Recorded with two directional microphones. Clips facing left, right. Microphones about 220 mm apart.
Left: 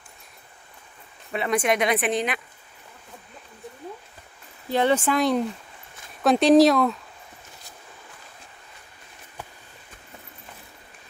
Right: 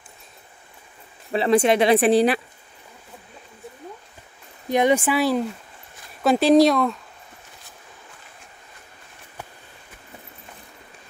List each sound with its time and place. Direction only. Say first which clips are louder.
1.3 s speech: right 6 dB; 30° right (ahead or behind)
4.6 s speech: right 2 dB; 15° right (ahead or behind)